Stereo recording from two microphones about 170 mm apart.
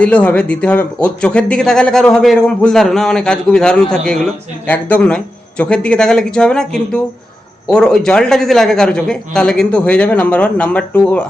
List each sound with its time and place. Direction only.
0.0 s speech: 10° left (ahead or behind)